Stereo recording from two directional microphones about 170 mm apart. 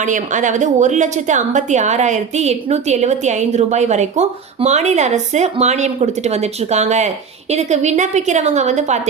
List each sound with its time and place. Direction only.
0.0 s a woman's voice: 45° right (ahead or behind)